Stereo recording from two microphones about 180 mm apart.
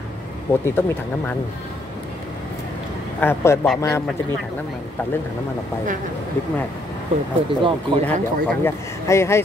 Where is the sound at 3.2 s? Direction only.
15° left (ahead or behind).